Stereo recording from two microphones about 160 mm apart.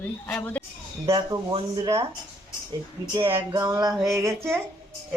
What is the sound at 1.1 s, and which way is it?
Speech, 25° right (ahead or behind).